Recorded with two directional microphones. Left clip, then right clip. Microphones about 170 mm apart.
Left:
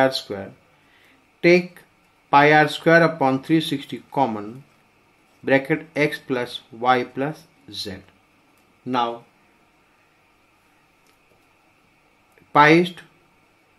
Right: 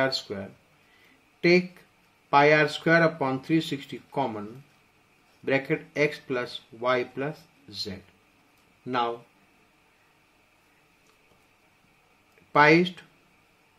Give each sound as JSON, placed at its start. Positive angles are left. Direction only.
{"t": 0.0, "sound": "speech", "side_deg": 20}
{"t": 2.2, "sound": "speech", "side_deg": 20}
{"t": 8.8, "sound": "speech", "side_deg": 10}
{"t": 12.5, "sound": "speech", "side_deg": 15}